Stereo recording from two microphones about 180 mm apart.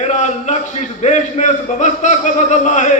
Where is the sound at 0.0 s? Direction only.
40° left (ahead or behind).